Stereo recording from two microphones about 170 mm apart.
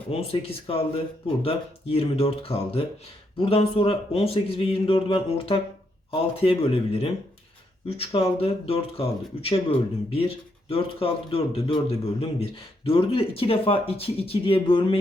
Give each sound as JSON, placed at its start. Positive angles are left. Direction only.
{"t": 0.1, "sound": "speech", "side_deg": 35}